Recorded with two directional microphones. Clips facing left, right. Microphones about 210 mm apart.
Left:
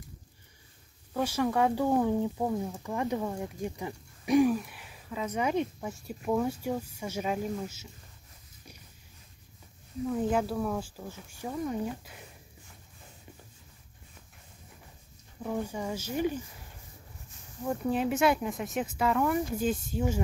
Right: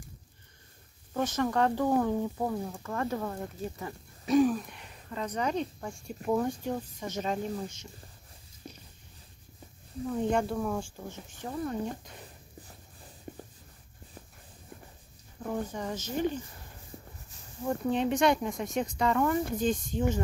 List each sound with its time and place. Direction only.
1.1 s speech: 10° left (ahead or behind)
10.0 s speech: 5° left (ahead or behind)
13.3 s a sound: 50° right (ahead or behind)
15.4 s speech: 10° left (ahead or behind)
17.6 s speech: 5° left (ahead or behind)